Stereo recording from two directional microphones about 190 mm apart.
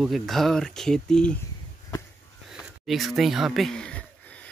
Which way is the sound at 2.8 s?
Centre (ahead or behind).